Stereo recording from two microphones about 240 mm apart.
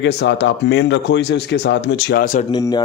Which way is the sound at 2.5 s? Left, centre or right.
Centre.